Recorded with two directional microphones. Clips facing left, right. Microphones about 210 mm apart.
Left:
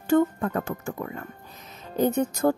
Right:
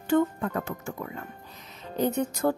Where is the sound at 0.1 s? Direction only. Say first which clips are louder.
Left 3 dB; 50° left (ahead or behind).